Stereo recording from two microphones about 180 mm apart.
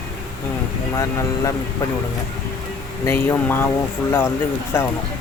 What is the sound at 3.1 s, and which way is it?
Speech, 15° left (ahead or behind).